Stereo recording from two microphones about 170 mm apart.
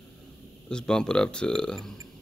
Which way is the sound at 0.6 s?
5° left (ahead or behind).